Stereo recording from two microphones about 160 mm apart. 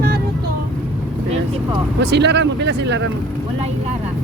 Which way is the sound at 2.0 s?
90° right.